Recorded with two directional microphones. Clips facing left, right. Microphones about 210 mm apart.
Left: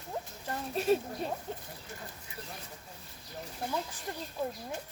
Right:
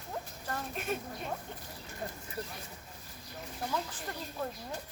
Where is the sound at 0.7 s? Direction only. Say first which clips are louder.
Left 11 dB; 30° left (ahead or behind).